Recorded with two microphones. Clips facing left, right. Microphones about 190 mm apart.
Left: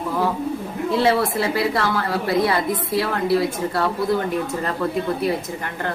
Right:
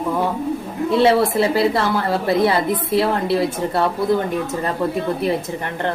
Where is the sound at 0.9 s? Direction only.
25° right (ahead or behind).